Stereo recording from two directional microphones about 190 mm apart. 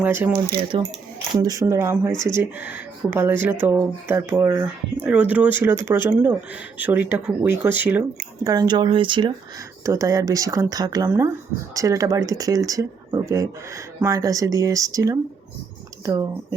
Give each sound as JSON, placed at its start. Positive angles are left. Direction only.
{"t": 0.0, "sound": "speech", "side_deg": -10}
{"t": 0.7, "sound": "speech", "side_deg": -30}
{"t": 8.4, "sound": "speech", "side_deg": -20}